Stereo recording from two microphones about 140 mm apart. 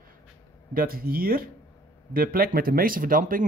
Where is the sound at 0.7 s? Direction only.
90° right.